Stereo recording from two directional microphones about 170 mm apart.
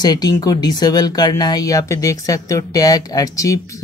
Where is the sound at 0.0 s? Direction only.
25° left (ahead or behind).